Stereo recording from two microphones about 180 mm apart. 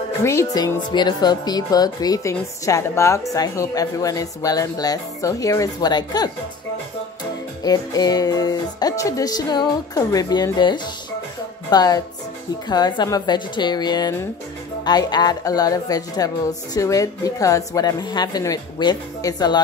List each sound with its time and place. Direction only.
0.2 s speech: 15° left (ahead or behind)
0.9 s music: 25° left (ahead or behind)
7.6 s music: 20° left (ahead or behind)